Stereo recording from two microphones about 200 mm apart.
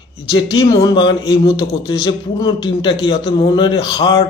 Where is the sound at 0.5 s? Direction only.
20° left (ahead or behind).